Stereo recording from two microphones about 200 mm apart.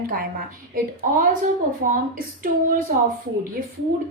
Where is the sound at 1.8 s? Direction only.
45° right (ahead or behind).